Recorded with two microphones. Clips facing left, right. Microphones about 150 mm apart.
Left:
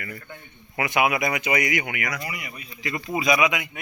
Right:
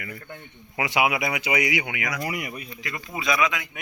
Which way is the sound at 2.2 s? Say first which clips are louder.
Right 5 dB; 50° right (ahead or behind).